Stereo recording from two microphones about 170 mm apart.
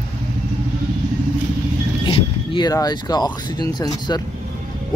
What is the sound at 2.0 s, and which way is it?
Speech, 25° left (ahead or behind).